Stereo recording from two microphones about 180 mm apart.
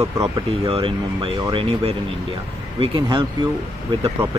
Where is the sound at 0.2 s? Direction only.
30° right (ahead or behind).